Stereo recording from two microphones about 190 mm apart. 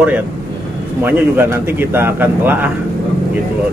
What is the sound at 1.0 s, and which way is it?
Speech, 10° right (ahead or behind).